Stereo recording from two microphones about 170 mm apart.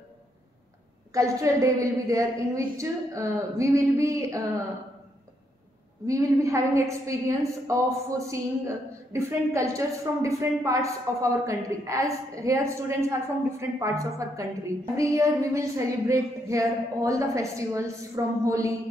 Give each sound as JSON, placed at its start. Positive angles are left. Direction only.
{"t": 1.1, "sound": "a woman's voice", "side_deg": -20}
{"t": 6.0, "sound": "a woman's voice", "side_deg": -20}